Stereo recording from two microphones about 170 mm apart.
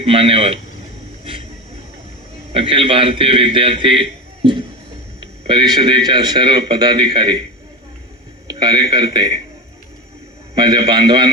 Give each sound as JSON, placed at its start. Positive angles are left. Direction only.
{"t": 0.0, "sound": "a man's voice", "side_deg": -30}
{"t": 1.2, "sound": "a sound", "side_deg": -30}
{"t": 2.5, "sound": "a man's voice", "side_deg": -30}
{"t": 8.4, "sound": "a sound", "side_deg": -25}
{"t": 8.9, "sound": "a man's voice", "side_deg": -25}
{"t": 10.5, "sound": "a man's voice", "side_deg": -25}